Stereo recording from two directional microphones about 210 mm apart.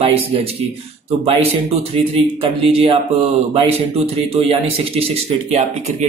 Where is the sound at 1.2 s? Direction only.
30° right (ahead or behind).